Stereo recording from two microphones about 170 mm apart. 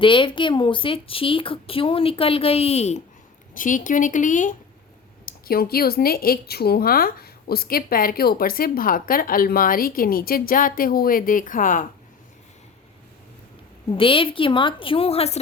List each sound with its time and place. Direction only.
0.0 s a woman's voice: 30° left (ahead or behind)
3.5 s a woman's voice: 50° left (ahead or behind)
5.2 s speech: 60° left (ahead or behind)
13.9 s a woman's voice: 30° left (ahead or behind)